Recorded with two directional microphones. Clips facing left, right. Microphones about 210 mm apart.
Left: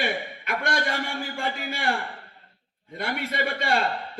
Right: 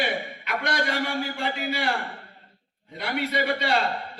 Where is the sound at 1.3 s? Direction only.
50° left (ahead or behind).